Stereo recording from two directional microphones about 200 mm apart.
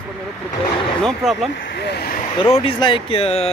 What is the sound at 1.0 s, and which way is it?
Speech, centre (ahead or behind).